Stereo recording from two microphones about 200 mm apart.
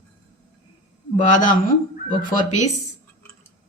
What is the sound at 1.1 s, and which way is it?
Speech, 40° left (ahead or behind).